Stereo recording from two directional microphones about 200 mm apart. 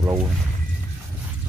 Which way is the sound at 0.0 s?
15° right (ahead or behind).